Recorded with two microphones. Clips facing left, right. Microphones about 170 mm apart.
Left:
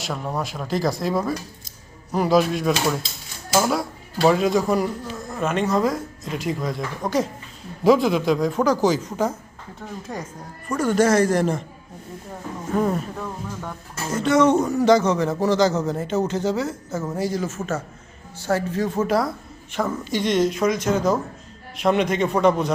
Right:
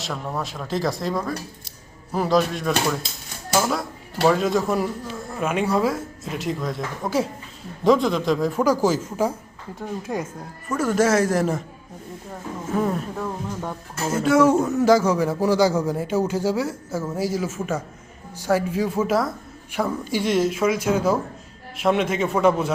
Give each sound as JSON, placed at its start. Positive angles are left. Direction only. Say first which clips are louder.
{"t": 0.0, "sound": "speech", "louder": "left 1 dB", "side_deg": 0}
{"t": 4.3, "sound": "a man's voice", "louder": "left 1 dB", "side_deg": 0}
{"t": 12.7, "sound": "speech", "louder": "left 1 dB", "side_deg": 0}
{"t": 13.2, "sound": "a man's voice", "louder": "right 3 dB", "side_deg": -15}
{"t": 14.1, "sound": "a man's voice", "louder": "even", "side_deg": -5}